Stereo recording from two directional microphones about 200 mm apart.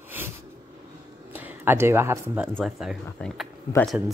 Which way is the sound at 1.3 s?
10° right (ahead or behind).